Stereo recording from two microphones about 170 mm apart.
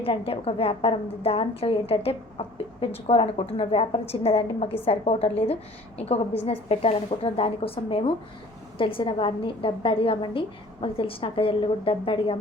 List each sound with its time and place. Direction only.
0.0 s a woman's voice: 35° left (ahead or behind)